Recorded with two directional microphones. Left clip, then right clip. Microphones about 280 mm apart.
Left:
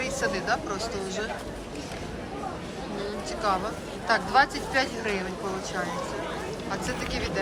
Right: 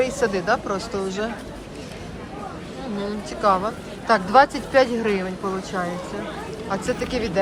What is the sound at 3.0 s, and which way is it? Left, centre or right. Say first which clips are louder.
Speech: right 6 dB; centre.